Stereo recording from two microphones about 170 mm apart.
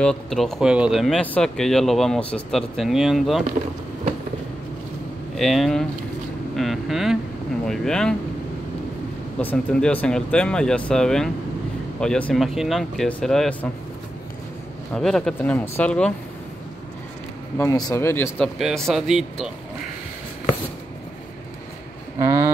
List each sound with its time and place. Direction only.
0.0 s speech: 5° left (ahead or behind)
5.3 s speech: centre (ahead or behind)
6.5 s vehicle: centre (ahead or behind)
7.6 s speech: 5° left (ahead or behind)
9.4 s speech: 10° left (ahead or behind)
15.0 s speech: 5° left (ahead or behind)
17.6 s speech: 20° left (ahead or behind)
18.6 s speech: centre (ahead or behind)
22.2 s a sound: 15° right (ahead or behind)